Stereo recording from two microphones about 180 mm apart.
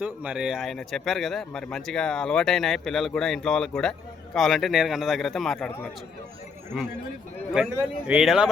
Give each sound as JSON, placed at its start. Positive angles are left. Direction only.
{"t": 0.0, "sound": "speech", "side_deg": -10}
{"t": 7.5, "sound": "speech", "side_deg": -5}